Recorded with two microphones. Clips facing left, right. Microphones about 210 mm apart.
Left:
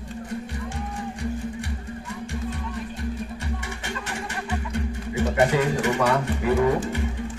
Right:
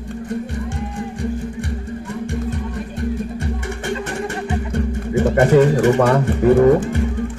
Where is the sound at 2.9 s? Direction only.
50° right (ahead or behind).